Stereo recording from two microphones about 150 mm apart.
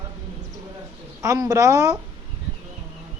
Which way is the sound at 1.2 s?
25° right (ahead or behind).